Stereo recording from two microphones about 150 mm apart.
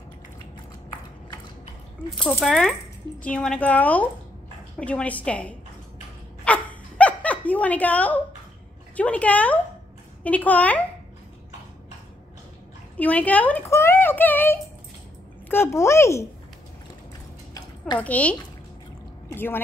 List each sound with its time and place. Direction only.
2.0 s speech: centre (ahead or behind)
6.4 s a sound: 10° left (ahead or behind)
8.9 s speech: 10° left (ahead or behind)
12.9 s speech: 10° left (ahead or behind)
17.9 s speech: 10° left (ahead or behind)